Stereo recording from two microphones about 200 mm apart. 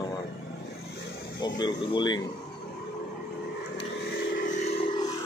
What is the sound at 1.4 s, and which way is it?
Speech, 20° left (ahead or behind).